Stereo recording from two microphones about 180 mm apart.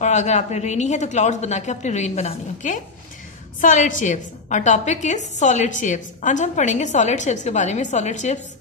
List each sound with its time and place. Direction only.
0.0 s a woman's voice: 40° left (ahead or behind)